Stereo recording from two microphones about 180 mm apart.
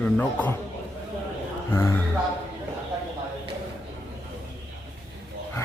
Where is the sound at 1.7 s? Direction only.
15° left (ahead or behind).